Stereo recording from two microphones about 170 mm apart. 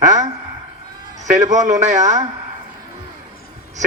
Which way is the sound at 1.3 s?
45° right (ahead or behind).